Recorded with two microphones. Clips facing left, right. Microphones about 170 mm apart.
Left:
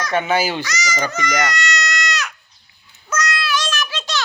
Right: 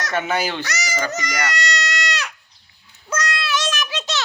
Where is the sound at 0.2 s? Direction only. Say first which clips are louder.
Left 3 dB; 5° left (ahead or behind).